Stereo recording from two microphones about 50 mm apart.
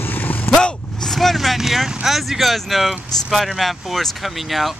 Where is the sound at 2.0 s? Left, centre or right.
Centre.